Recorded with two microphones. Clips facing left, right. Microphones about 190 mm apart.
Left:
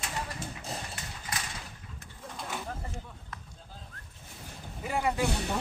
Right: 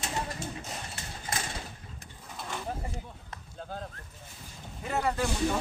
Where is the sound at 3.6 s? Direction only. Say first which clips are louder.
Right 12 dB; 75° right (ahead or behind).